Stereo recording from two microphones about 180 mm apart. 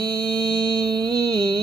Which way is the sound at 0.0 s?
25° right (ahead or behind).